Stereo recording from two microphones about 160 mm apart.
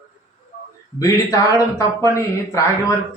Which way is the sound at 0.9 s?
20° left (ahead or behind).